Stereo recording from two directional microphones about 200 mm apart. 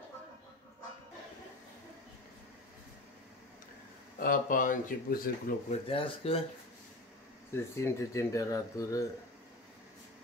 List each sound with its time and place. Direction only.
4.2 s speech: 45° left (ahead or behind)
5.9 s speech: 30° left (ahead or behind)
7.5 s speech: 15° left (ahead or behind)